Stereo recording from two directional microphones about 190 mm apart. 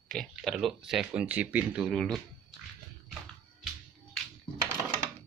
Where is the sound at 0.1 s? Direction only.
Centre (ahead or behind).